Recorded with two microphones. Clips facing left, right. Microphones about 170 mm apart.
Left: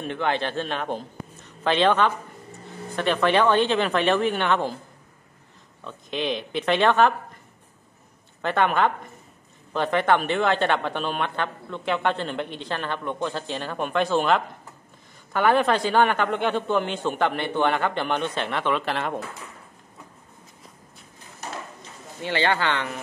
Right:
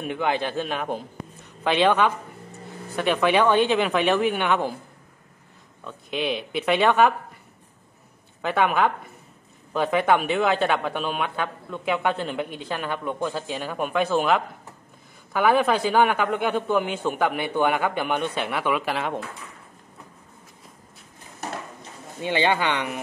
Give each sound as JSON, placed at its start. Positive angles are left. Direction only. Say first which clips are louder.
{"t": 0.0, "sound": "a man's voice", "louder": "right 1 dB", "side_deg": -10}
{"t": 5.9, "sound": "speech", "louder": "right 1 dB", "side_deg": -5}
{"t": 8.4, "sound": "a woman's voice", "louder": "even", "side_deg": -5}
{"t": 22.2, "sound": "speech", "louder": "right 1 dB", "side_deg": -15}